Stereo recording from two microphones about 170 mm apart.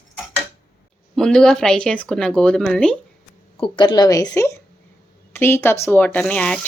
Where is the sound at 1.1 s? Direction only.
5° left (ahead or behind).